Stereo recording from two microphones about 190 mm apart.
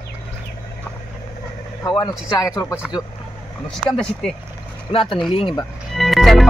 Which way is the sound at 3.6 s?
5° left (ahead or behind).